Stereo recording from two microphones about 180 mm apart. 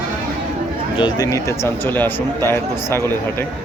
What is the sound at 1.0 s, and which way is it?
A man's voice, 25° left (ahead or behind).